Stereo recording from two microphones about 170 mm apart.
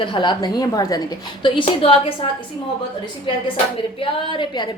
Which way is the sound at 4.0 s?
30° left (ahead or behind).